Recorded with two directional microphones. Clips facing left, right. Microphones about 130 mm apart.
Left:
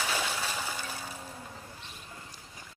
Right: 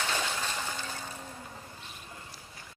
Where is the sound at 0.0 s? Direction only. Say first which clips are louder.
Even; 5° left (ahead or behind).